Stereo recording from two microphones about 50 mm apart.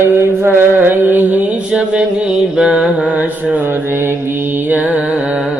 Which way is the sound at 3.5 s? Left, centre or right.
Right.